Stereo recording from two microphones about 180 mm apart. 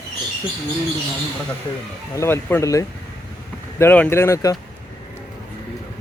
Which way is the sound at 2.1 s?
15° left (ahead or behind).